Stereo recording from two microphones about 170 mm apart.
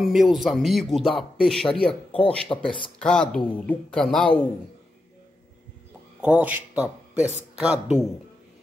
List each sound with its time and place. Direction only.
0.0 s speech: centre (ahead or behind)
6.2 s a man's voice: 10° right (ahead or behind)